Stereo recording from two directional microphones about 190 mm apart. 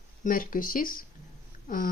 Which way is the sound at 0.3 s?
45° left (ahead or behind).